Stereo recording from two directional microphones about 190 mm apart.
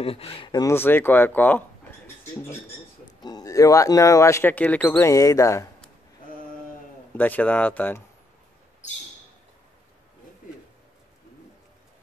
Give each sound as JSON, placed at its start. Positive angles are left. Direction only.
{"t": 0.0, "sound": "speech", "side_deg": 30}
{"t": 3.2, "sound": "speech", "side_deg": 20}
{"t": 7.2, "sound": "speech", "side_deg": 10}